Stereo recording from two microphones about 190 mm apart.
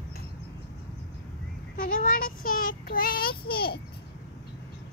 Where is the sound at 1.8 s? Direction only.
45° left (ahead or behind).